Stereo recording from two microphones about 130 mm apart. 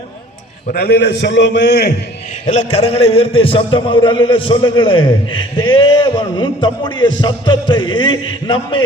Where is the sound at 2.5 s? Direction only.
60° left (ahead or behind).